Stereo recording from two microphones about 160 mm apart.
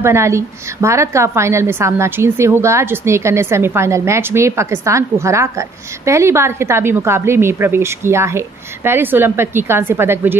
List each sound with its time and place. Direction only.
0.0 s a woman's voice: 15° right (ahead or behind)